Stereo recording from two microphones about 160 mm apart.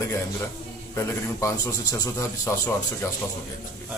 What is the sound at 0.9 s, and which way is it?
A man's voice, 20° left (ahead or behind).